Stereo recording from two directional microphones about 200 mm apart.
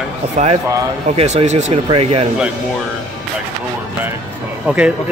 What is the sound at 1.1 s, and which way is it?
Speech, 35° right (ahead or behind).